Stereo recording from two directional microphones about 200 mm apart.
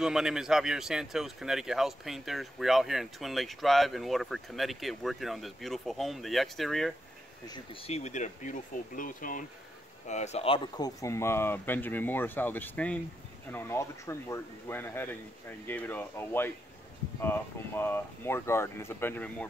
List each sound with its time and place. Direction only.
0.0 s speech: 5° right (ahead or behind)
7.4 s speech: 25° left (ahead or behind)
11.0 s speech: 15° left (ahead or behind)